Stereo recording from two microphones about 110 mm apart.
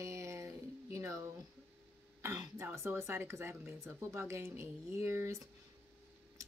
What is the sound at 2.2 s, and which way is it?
Speech, 30° right (ahead or behind).